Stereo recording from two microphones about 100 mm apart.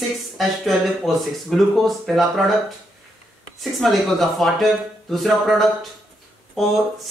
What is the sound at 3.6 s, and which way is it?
Speech, centre (ahead or behind).